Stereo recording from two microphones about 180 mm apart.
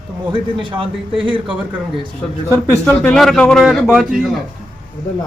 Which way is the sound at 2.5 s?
10° left (ahead or behind).